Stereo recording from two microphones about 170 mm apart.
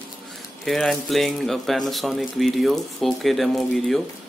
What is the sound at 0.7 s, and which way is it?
Speech, centre (ahead or behind).